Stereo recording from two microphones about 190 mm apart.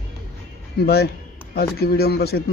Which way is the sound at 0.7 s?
55° left (ahead or behind).